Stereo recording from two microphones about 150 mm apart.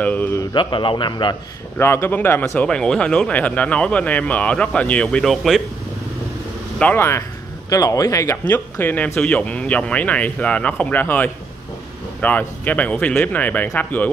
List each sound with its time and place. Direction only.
0.0 s a sound: 10° left (ahead or behind)
0.4 s a man's voice: 30° left (ahead or behind)
1.8 s speech: 15° left (ahead or behind); by 5.6 s centre (ahead or behind)
6.8 s speech: 15° left (ahead or behind)